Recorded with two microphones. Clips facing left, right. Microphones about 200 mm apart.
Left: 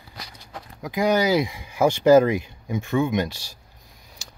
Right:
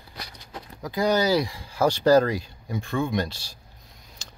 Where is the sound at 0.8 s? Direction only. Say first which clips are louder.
Left 2 dB; 15° left (ahead or behind).